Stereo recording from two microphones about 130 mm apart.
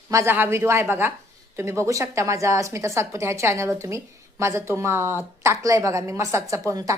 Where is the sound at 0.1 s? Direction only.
20° right (ahead or behind).